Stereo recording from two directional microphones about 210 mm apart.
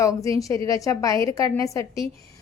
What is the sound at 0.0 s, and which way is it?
A woman's voice, 15° left (ahead or behind).